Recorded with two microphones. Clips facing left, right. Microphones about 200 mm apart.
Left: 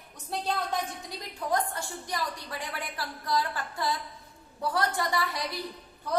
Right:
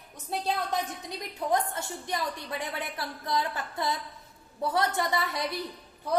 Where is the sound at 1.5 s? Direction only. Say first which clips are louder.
Right 1 dB; 20° right (ahead or behind).